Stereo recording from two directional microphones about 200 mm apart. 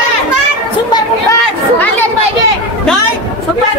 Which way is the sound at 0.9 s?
20° left (ahead or behind).